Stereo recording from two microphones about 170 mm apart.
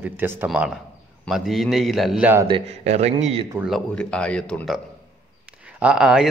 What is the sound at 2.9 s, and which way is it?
Speech, 40° right (ahead or behind).